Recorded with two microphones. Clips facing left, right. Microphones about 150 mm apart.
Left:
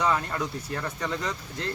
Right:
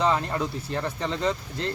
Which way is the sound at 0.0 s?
25° right (ahead or behind).